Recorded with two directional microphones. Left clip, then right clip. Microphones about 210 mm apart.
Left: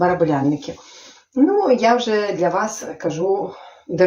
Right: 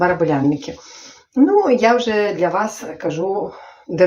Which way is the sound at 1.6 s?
20° right (ahead or behind).